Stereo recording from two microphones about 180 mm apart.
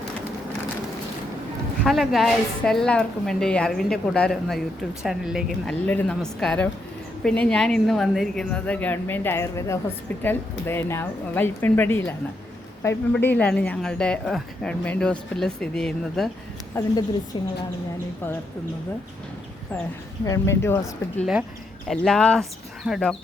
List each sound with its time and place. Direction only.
1.8 s speech: centre (ahead or behind)
5.8 s a woman's voice: 10° left (ahead or behind)
16.7 s a woman's voice: 15° left (ahead or behind)
17.3 s a woman's voice: 25° left (ahead or behind)
20.2 s a woman's voice: 15° left (ahead or behind)
21.8 s speech: centre (ahead or behind)